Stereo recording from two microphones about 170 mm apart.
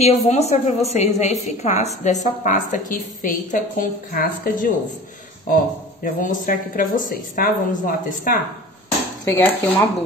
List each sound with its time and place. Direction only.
0.0 s a woman's voice: 40° left (ahead or behind)
6.0 s speech: 50° left (ahead or behind)
9.2 s speech: 15° left (ahead or behind)